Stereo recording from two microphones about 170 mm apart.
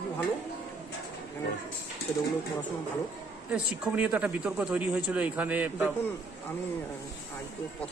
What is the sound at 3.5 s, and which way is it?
Speech, 5° right (ahead or behind).